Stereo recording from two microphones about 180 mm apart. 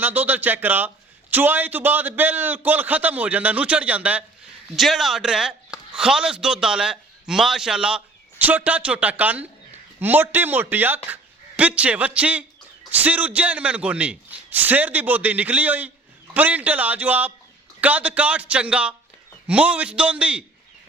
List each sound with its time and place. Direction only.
0.0 s a man's voice: 10° right (ahead or behind)